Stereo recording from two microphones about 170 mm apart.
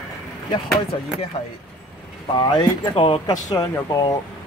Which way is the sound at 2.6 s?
35° left (ahead or behind).